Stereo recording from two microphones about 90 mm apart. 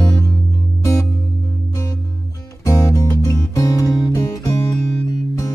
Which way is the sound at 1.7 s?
40° left (ahead or behind).